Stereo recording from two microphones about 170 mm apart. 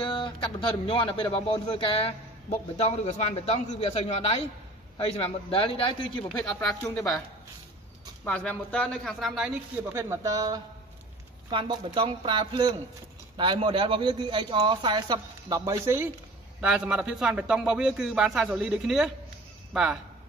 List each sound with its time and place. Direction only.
0.0 s a man's voice: 30° left (ahead or behind)
6.8 s speech: 15° left (ahead or behind)
8.3 s a man's voice: 10° left (ahead or behind)
9.9 s a man's voice: 15° right (ahead or behind)
16.6 s a man's voice: 5° right (ahead or behind)